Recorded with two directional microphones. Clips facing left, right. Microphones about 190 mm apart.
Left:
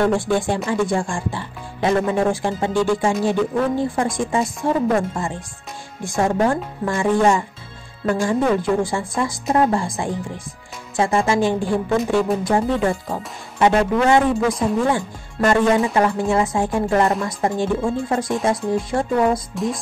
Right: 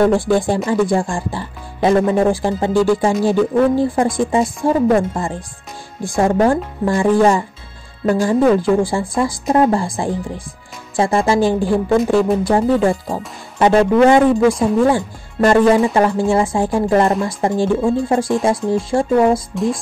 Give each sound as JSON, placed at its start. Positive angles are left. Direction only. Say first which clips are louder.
{"t": 0.1, "sound": "speech", "louder": "right 4 dB", "side_deg": -35}